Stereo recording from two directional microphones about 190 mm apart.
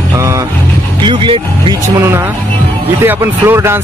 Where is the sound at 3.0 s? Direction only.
10° right (ahead or behind).